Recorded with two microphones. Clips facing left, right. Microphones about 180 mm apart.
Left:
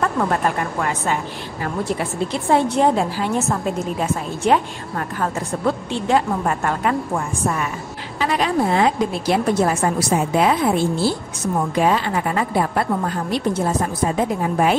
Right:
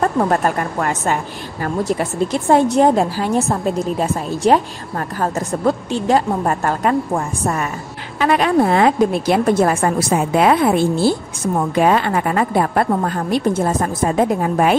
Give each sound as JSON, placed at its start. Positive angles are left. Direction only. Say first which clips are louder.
{"t": 0.0, "sound": "a woman's voice", "louder": "right 3 dB", "side_deg": -40}
{"t": 8.2, "sound": "a woman's voice", "louder": "right 5 dB", "side_deg": -55}